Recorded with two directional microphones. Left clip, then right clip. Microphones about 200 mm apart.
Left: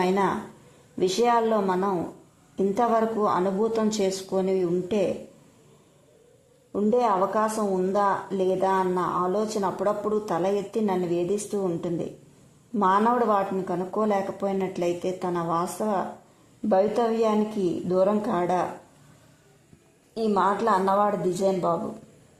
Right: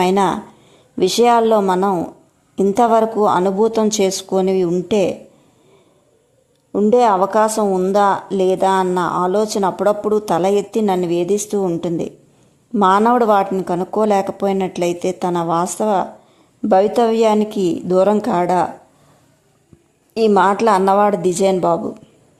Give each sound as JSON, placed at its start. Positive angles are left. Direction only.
{"t": 0.0, "sound": "speech", "side_deg": -20}
{"t": 6.7, "sound": "speech", "side_deg": -20}
{"t": 20.1, "sound": "speech", "side_deg": -30}